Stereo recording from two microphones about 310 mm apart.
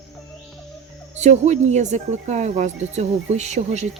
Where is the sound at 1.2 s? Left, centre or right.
Right.